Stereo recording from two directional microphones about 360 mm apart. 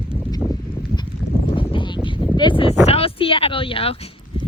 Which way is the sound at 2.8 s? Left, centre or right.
Centre.